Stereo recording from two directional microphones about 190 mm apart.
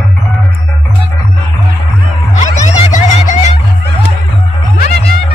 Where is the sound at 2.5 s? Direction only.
40° left (ahead or behind).